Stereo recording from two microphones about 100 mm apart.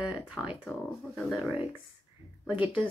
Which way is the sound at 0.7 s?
Centre (ahead or behind).